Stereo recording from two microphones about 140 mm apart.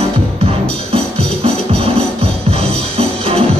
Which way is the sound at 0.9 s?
45° right (ahead or behind).